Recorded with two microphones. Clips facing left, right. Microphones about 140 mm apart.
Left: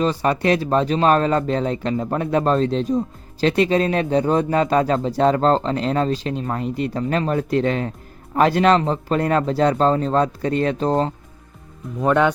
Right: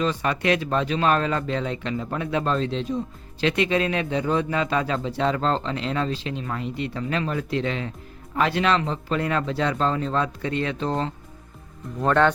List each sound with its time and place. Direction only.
0.0 s a man's voice: 35° left (ahead or behind)
11.9 s a man's voice: 10° left (ahead or behind)